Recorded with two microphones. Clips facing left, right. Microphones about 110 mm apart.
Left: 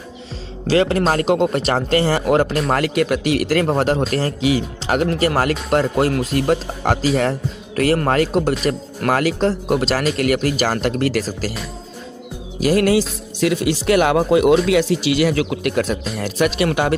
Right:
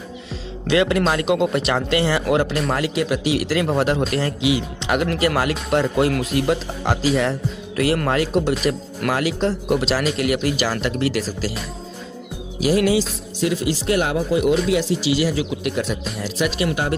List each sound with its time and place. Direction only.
0.7 s speech: 35° left (ahead or behind)
2.7 s speech: 55° left (ahead or behind)
3.6 s speech: 40° left (ahead or behind)
13.4 s speech: 70° left (ahead or behind)
14.7 s speech: 70° left (ahead or behind)
16.5 s speech: 70° left (ahead or behind)